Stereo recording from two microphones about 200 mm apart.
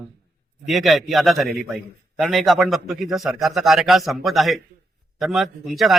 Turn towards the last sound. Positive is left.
turn(degrees=0)  # may be behind; listen again after turning